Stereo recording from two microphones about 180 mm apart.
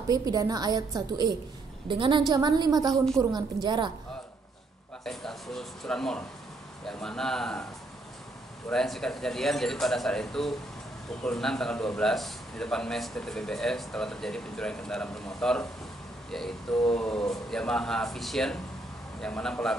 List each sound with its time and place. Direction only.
0.1 s a woman's voice: 20° right (ahead or behind)
5.0 s a man's voice: centre (ahead or behind)
8.6 s a man's voice: centre (ahead or behind)
16.3 s a sound: centre (ahead or behind)
16.9 s a man's voice: 5° left (ahead or behind)